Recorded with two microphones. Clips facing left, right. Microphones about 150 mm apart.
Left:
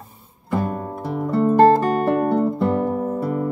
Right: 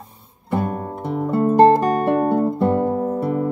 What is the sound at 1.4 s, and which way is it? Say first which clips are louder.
Music: right 1 dB; 15° right (ahead or behind).